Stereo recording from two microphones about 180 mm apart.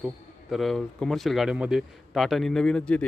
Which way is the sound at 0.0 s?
Centre (ahead or behind).